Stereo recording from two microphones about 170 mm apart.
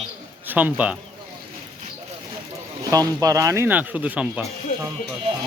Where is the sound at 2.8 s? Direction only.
20° right (ahead or behind).